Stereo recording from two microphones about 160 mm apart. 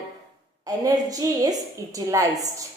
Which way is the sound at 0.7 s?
20° right (ahead or behind).